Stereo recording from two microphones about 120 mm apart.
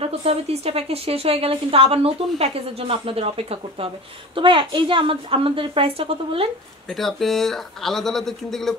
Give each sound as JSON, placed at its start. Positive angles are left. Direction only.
{"t": 0.2, "sound": "a woman's voice", "side_deg": -60}
{"t": 6.9, "sound": "speech", "side_deg": 0}